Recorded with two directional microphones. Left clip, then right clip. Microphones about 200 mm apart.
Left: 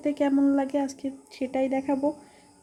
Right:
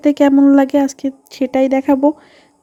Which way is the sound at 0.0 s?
40° right (ahead or behind).